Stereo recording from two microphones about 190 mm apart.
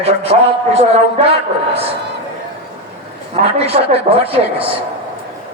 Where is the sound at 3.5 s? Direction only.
30° right (ahead or behind).